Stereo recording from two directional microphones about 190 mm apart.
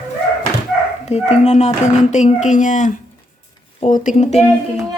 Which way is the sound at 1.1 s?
35° left (ahead or behind).